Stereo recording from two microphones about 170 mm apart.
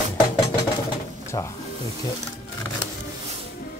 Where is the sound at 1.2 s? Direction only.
15° left (ahead or behind).